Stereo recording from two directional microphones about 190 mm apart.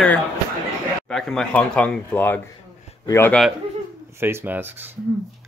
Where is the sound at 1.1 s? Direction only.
5° left (ahead or behind).